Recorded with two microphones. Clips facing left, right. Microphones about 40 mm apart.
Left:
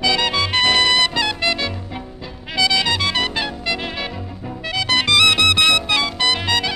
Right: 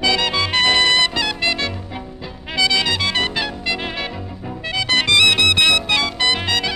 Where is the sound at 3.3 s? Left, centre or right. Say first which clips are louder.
Even; centre.